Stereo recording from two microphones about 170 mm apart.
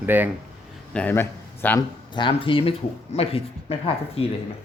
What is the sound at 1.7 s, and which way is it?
Speech, 25° left (ahead or behind).